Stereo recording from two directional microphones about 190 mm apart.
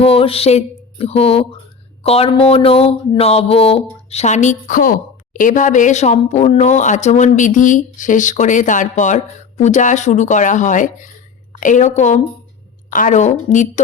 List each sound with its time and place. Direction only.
0.0 s a woman's voice: 30° left (ahead or behind)